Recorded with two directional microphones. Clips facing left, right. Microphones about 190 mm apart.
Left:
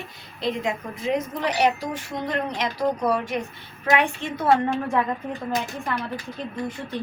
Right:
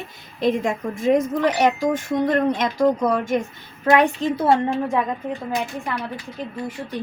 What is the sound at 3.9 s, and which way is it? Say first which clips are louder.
Speech: right 6 dB; 35° right (ahead or behind).